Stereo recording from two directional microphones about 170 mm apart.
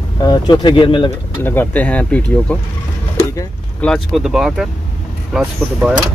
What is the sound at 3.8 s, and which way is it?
Speech, 5° left (ahead or behind).